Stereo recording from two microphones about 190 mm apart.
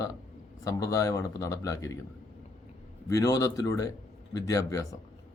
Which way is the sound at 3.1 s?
15° left (ahead or behind).